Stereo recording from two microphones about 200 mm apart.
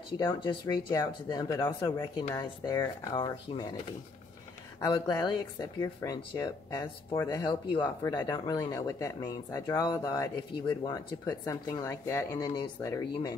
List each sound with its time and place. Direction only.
0.2 s speech: 25° left (ahead or behind)
4.8 s speech: 20° left (ahead or behind)